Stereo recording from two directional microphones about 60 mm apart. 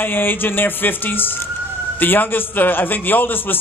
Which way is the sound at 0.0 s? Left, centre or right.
Left.